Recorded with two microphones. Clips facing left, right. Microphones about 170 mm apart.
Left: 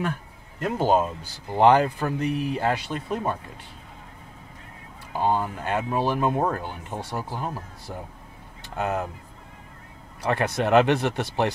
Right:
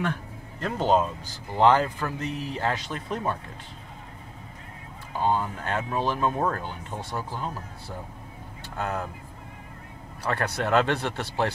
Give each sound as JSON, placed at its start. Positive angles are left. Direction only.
{"t": 0.6, "sound": "speech", "side_deg": 10}
{"t": 5.2, "sound": "speech", "side_deg": 10}
{"t": 8.7, "sound": "speech", "side_deg": 20}
{"t": 10.2, "sound": "speech", "side_deg": 20}